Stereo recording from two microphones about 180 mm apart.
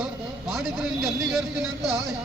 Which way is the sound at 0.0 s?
Centre (ahead or behind).